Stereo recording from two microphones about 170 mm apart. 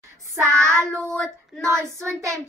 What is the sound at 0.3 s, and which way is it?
Speech, 15° right (ahead or behind).